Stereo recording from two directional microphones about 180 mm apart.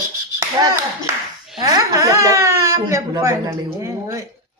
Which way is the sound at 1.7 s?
20° right (ahead or behind).